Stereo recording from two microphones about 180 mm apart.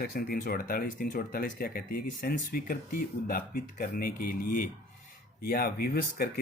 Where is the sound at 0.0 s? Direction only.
55° left (ahead or behind).